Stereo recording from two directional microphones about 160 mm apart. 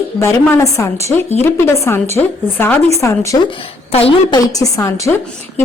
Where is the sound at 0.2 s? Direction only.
15° left (ahead or behind).